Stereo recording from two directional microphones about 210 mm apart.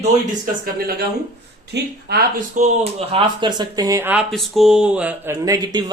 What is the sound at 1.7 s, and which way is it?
Speech, 50° right (ahead or behind).